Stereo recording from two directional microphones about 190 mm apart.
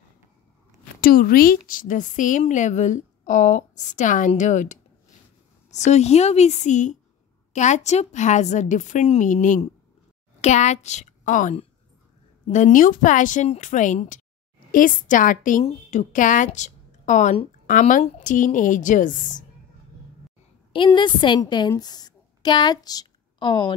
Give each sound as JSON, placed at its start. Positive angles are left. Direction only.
{"t": 1.0, "sound": "a woman's voice", "side_deg": 50}
{"t": 20.7, "sound": "a woman's voice", "side_deg": 25}